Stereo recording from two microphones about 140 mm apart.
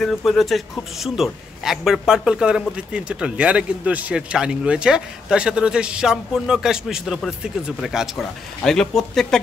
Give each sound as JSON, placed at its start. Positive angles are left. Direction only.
{"t": 0.0, "sound": "a man's voice", "side_deg": 0}